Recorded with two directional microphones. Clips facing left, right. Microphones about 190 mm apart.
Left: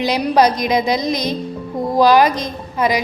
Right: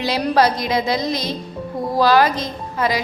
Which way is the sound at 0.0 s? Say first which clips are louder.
Left 3 dB; 15° left (ahead or behind).